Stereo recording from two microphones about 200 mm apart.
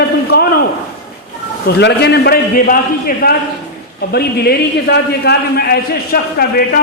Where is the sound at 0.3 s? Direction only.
55° left (ahead or behind).